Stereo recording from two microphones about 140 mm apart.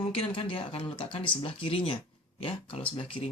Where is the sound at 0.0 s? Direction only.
40° left (ahead or behind).